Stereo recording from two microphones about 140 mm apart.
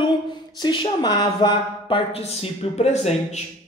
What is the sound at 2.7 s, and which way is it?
Speech, 50° left (ahead or behind).